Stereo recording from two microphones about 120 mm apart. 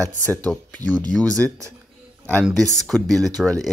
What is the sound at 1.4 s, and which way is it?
Speech, 15° left (ahead or behind).